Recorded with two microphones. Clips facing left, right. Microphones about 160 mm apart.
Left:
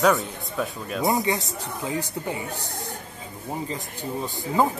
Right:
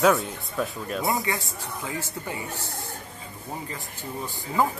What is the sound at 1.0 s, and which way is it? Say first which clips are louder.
Speech: left 5 dB; 20° left (ahead or behind).